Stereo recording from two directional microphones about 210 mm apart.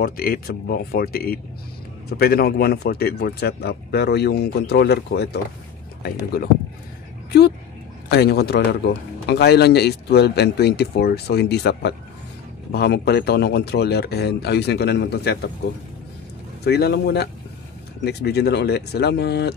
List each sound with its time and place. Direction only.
0.0 s speech: 45° left (ahead or behind)
8.1 s speech: 50° left (ahead or behind)
16.6 s speech: 50° left (ahead or behind)